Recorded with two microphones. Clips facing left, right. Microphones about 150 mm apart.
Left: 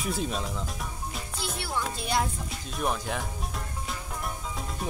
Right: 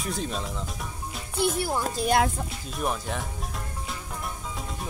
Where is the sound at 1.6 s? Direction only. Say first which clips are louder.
Right 5 dB; 40° right (ahead or behind).